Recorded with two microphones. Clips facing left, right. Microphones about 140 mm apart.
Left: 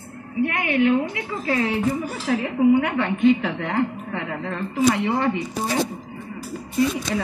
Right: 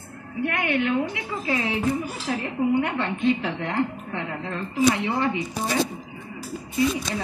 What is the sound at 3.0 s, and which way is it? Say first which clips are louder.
Music: left 5 dB; 55° left (ahead or behind).